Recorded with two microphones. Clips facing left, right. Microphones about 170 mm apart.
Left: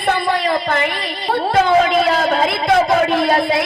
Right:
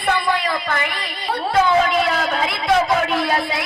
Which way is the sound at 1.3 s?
50° left (ahead or behind).